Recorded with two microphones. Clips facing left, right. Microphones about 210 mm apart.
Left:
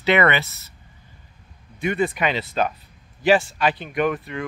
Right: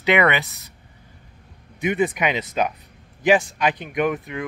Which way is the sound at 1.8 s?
15° right (ahead or behind).